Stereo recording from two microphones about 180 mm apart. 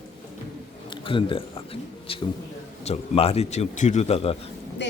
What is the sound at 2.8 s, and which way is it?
A man's voice, 35° left (ahead or behind).